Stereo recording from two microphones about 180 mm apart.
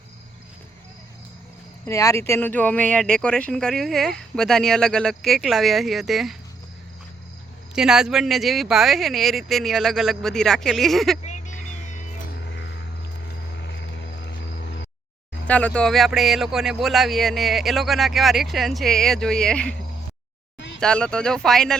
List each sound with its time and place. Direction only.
1.9 s speech: 15° left (ahead or behind); by 6.3 s centre (ahead or behind)
7.8 s speech: 5° right (ahead or behind)
11.3 s music: 40° left (ahead or behind)
15.4 s speech: 5° left (ahead or behind)
20.7 s speech: 5° left (ahead or behind)